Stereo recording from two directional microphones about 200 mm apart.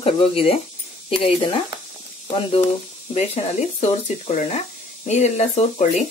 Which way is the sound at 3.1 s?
35° left (ahead or behind).